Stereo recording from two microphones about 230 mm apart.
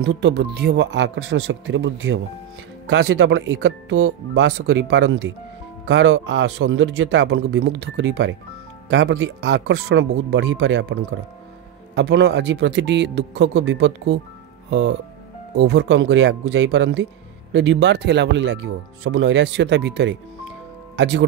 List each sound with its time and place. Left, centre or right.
0.0 s speech: right